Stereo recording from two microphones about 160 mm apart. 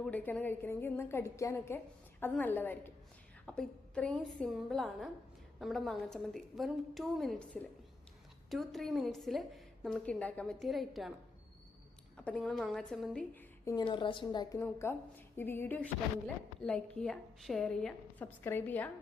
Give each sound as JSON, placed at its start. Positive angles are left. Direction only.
{"t": 0.0, "sound": "a woman's voice", "side_deg": 10}
{"t": 12.1, "sound": "a woman's voice", "side_deg": 5}
{"t": 13.7, "sound": "a woman's voice", "side_deg": 30}